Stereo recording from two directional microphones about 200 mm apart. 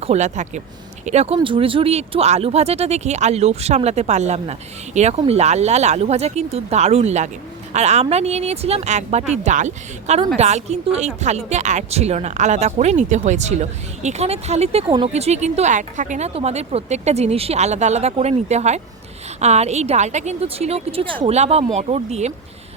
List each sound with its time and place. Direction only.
0.0 s speech: 35° right (ahead or behind)